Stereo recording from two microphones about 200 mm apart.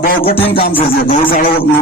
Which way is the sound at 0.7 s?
25° left (ahead or behind).